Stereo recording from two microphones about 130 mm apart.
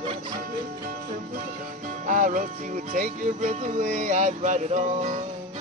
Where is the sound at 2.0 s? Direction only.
90° right; by 5.2 s 60° right (ahead or behind).